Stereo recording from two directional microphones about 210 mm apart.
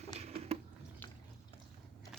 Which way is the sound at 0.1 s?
30° right (ahead or behind).